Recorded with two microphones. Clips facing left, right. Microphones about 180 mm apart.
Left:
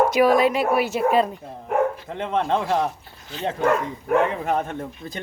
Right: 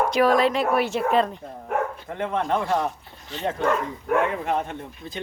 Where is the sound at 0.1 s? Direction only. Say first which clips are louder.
Left 2 dB; 10° left (ahead or behind).